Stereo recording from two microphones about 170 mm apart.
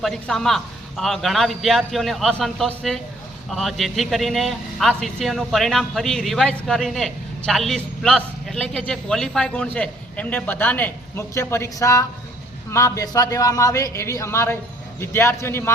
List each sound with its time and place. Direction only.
0.0 s a man's voice: centre (ahead or behind)